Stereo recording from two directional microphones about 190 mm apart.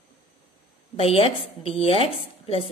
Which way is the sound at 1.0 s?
30° left (ahead or behind).